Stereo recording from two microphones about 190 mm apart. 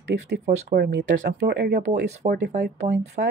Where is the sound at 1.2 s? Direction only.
60° right (ahead or behind).